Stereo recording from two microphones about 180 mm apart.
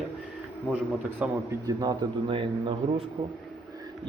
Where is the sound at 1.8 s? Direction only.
25° right (ahead or behind).